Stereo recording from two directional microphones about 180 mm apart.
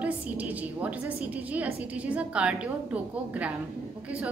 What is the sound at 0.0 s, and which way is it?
A woman's voice, 10° right (ahead or behind).